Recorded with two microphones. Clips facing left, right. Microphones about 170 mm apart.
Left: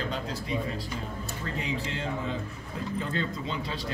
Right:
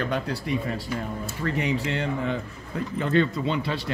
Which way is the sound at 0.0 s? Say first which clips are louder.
Right 5 dB; 65° right (ahead or behind).